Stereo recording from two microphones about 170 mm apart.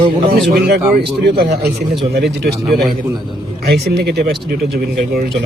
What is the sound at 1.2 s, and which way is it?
Speech, 85° right.